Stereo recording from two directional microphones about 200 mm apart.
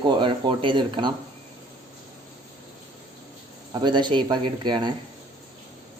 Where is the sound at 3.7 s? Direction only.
20° right (ahead or behind).